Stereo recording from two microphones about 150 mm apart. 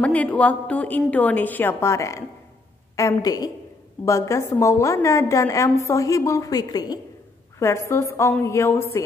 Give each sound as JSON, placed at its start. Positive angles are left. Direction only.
{"t": 0.0, "sound": "a woman's voice", "side_deg": 10}